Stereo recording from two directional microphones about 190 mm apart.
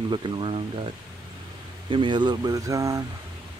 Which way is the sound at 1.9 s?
25° right (ahead or behind).